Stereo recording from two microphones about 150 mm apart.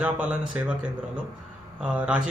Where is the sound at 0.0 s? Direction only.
10° right (ahead or behind).